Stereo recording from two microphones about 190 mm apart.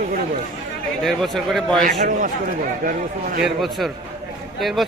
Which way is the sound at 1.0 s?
Centre (ahead or behind).